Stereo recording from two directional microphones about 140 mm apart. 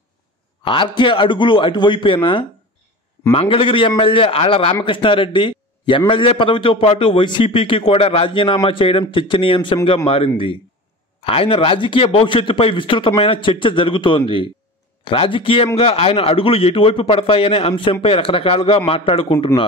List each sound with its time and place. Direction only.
0.7 s a man's voice: 35° left (ahead or behind)
3.3 s a man's voice: 40° left (ahead or behind)